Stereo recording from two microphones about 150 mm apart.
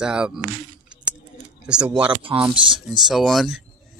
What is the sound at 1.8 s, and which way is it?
Speech, 10° right (ahead or behind).